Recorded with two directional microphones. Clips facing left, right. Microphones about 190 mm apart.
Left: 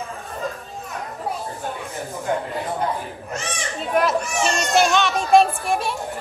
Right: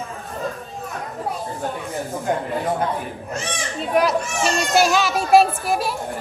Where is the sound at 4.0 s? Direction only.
Centre (ahead or behind).